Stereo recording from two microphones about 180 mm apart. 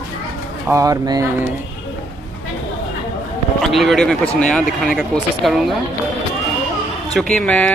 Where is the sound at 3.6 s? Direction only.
Centre (ahead or behind).